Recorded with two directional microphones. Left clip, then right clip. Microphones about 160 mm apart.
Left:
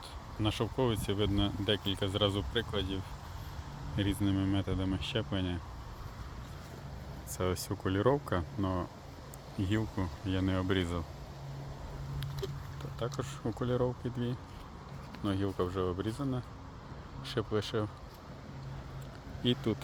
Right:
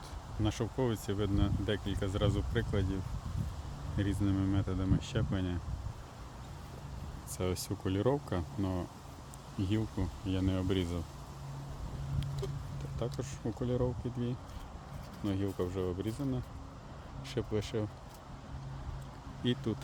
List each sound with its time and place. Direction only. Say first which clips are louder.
0.4 s speech: left 2 dB; 15° right (ahead or behind)
7.3 s speech: left 2 dB; 20° right (ahead or behind)
13.1 s speech: left 2 dB; 10° right (ahead or behind)
19.4 s speech: left 3 dB; 10° right (ahead or behind)